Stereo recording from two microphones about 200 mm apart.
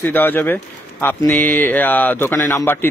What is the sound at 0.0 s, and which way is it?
Speech, 10° left (ahead or behind).